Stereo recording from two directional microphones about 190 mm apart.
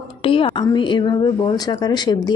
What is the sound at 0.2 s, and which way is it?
Speech, 30° left (ahead or behind).